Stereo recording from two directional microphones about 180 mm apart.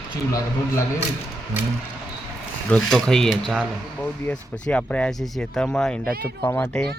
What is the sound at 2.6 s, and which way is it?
Speech, 5° left (ahead or behind).